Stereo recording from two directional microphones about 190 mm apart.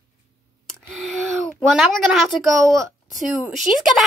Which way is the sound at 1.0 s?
Centre (ahead or behind).